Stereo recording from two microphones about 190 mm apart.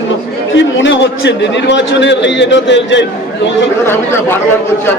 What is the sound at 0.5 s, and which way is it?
A man's voice, 75° left (ahead or behind).